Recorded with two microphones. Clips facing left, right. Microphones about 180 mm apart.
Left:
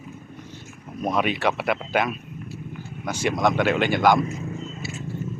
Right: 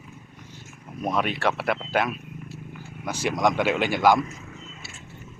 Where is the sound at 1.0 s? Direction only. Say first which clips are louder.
Left 2 dB; centre (ahead or behind).